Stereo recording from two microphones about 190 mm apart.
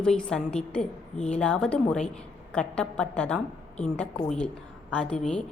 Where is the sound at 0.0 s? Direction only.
5° left (ahead or behind).